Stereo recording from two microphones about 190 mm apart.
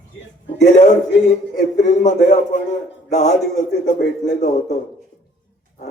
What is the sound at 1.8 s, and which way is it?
A man's voice, 40° left (ahead or behind).